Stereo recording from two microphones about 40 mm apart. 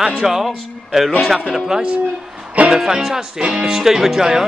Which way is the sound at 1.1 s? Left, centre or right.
Centre.